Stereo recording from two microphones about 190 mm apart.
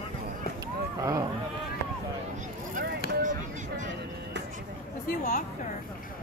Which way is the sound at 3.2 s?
40° right (ahead or behind).